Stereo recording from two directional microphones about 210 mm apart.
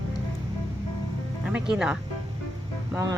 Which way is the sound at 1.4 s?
5° right (ahead or behind).